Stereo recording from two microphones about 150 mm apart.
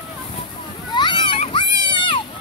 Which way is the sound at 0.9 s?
30° left (ahead or behind).